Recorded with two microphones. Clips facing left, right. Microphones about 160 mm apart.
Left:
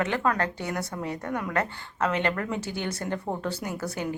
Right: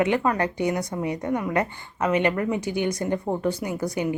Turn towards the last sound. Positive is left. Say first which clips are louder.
# right 5 dB
turn(degrees=-15)  # may be behind; listen again after turning